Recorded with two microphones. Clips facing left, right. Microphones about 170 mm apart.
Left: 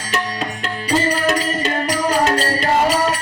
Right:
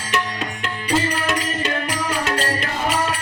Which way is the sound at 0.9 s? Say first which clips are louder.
Left 4 dB; 40° left (ahead or behind).